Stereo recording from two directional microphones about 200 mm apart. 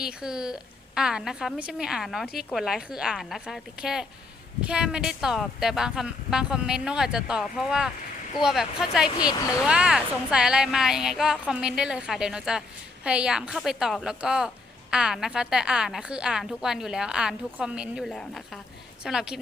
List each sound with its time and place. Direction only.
0.0 s speech: 5° right (ahead or behind)